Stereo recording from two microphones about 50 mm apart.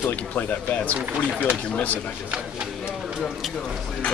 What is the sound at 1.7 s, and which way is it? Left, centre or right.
Speech, left.